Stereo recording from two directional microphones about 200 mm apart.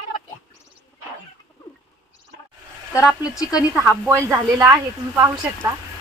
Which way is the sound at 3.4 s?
15° left (ahead or behind).